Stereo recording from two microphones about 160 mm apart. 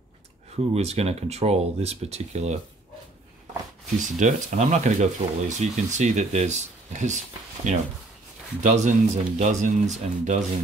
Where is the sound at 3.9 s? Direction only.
50° right (ahead or behind).